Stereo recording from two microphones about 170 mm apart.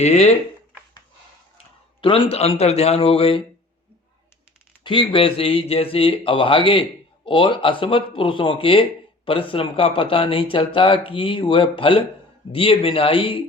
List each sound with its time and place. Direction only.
0.0 s speech: 40° left (ahead or behind)
2.0 s speech: 30° left (ahead or behind)
4.8 s speech: 30° left (ahead or behind)